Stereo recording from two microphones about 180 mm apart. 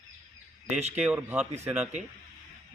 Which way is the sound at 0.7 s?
40° right (ahead or behind).